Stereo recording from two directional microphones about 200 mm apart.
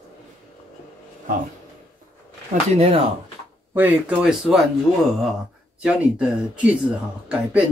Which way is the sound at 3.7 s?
5° right (ahead or behind).